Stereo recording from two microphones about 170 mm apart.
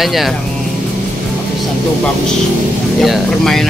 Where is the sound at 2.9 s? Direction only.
Centre (ahead or behind).